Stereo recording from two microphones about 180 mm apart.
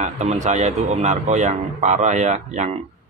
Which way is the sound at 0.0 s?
40° right (ahead or behind).